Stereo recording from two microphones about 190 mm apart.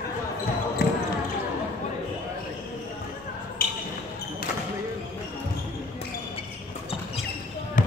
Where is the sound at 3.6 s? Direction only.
55° left (ahead or behind).